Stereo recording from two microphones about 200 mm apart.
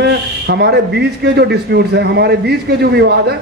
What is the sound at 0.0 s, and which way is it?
A man's voice, 55° right (ahead or behind).